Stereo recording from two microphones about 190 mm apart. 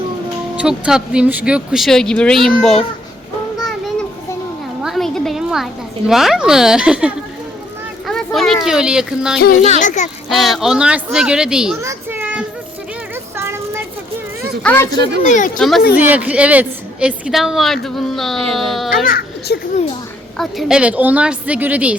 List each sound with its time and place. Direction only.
0.5 s speech: 5° right (ahead or behind)
4.8 s a sound: centre (ahead or behind)
6.1 s speech: centre (ahead or behind)
8.0 s a sound: centre (ahead or behind)
9.6 s a child's voice: 35° left (ahead or behind)
10.2 s speech: centre (ahead or behind)
11.8 s children playing: 15° right (ahead or behind)
13.3 s a sound: 15° right (ahead or behind)
14.6 s speech: 10° left (ahead or behind)
14.8 s speech: 20° left (ahead or behind)
15.3 s a child's voice: 40° left (ahead or behind)
15.5 s a woman's voice: centre (ahead or behind)
19.0 s a sound: 55° left (ahead or behind)
20.4 s a woman's voice: centre (ahead or behind)